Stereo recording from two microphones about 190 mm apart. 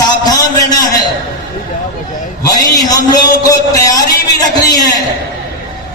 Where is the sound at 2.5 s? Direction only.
20° left (ahead or behind).